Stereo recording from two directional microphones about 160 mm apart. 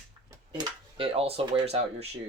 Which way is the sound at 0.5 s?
35° right (ahead or behind).